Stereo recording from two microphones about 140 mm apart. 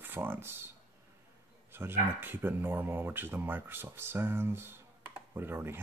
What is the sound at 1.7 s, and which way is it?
Speech, 15° right (ahead or behind).